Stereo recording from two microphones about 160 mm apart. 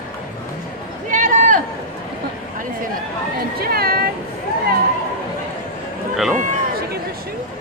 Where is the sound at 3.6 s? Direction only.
70° right (ahead or behind).